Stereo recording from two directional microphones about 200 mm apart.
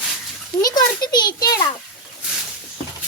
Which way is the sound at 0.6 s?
20° left (ahead or behind).